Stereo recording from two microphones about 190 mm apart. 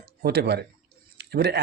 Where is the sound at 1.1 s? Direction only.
60° right (ahead or behind).